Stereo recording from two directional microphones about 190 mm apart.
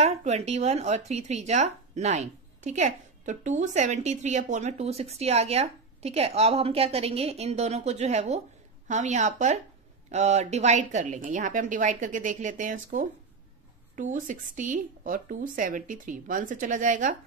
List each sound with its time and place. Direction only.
0.0 s speech: 35° right (ahead or behind)